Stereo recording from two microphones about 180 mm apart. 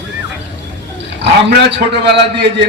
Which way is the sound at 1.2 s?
75° right (ahead or behind).